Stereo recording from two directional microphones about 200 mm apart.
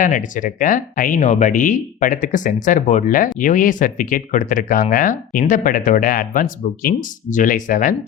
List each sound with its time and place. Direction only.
0.0 s speech: 40° left (ahead or behind)